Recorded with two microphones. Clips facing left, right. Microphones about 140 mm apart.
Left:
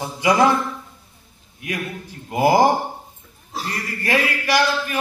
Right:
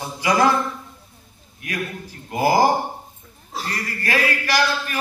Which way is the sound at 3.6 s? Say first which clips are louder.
Left 2 dB; 20° left (ahead or behind).